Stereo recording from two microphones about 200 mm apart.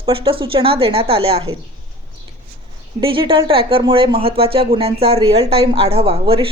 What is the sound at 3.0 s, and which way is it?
A woman's voice, 25° right (ahead or behind).